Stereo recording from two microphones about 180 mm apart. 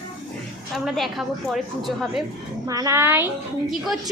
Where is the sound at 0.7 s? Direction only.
Centre (ahead or behind).